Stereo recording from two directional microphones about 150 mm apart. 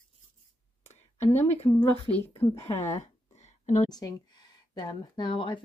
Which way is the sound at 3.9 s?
25° left (ahead or behind).